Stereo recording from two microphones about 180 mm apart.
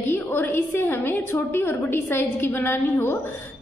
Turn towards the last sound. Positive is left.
turn(degrees=10)  # may be behind; listen again after turning